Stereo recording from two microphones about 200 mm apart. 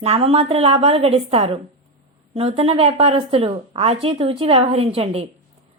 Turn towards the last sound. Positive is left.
turn(degrees=-30)  # may be behind; listen again after turning